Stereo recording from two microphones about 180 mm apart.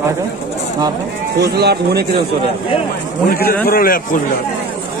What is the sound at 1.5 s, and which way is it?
Speech, 65° right (ahead or behind).